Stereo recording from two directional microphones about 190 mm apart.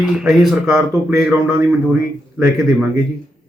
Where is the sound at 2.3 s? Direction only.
10° right (ahead or behind).